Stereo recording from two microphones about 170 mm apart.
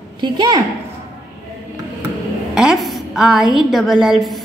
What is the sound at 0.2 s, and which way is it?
Speech, 25° right (ahead or behind).